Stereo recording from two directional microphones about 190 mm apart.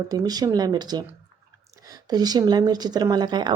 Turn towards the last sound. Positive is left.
turn(degrees=-20)  # may be behind; listen again after turning